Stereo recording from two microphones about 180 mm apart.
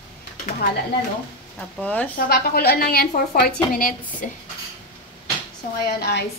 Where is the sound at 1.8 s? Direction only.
10° left (ahead or behind).